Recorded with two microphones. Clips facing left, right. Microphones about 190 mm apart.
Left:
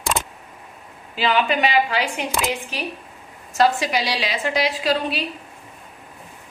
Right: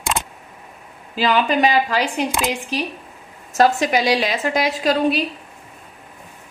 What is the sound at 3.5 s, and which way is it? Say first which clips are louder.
A woman's voice: right 3 dB; 50° right (ahead or behind).